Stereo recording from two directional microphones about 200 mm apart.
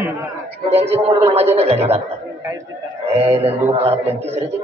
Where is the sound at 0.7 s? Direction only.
30° right (ahead or behind).